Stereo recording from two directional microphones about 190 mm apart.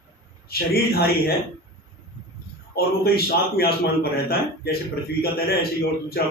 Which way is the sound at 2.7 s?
55° left (ahead or behind).